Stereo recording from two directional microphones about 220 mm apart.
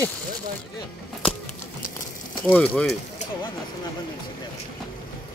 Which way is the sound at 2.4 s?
5° left (ahead or behind).